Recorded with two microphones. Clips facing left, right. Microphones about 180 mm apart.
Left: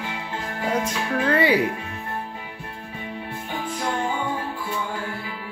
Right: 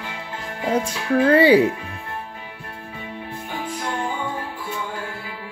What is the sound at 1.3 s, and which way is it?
Speech, 30° right (ahead or behind).